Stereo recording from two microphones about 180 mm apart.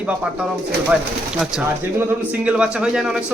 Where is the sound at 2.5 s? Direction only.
5° right (ahead or behind).